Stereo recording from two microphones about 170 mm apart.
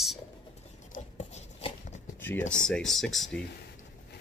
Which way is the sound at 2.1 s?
10° left (ahead or behind).